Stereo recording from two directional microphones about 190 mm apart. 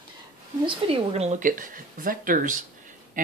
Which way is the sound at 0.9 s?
35° right (ahead or behind).